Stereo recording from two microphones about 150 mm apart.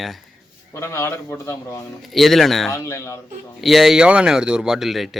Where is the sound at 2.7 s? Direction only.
20° left (ahead or behind).